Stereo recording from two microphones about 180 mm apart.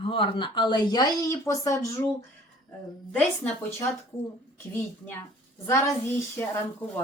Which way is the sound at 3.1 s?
5° left (ahead or behind).